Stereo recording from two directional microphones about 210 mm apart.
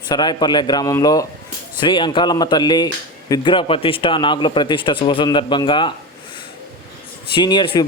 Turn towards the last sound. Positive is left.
turn(degrees=20)  # may be behind; listen again after turning